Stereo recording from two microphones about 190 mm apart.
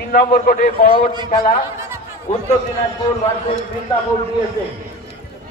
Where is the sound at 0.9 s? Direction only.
25° right (ahead or behind).